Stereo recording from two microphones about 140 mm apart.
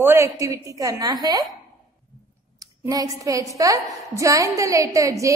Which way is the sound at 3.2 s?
25° right (ahead or behind).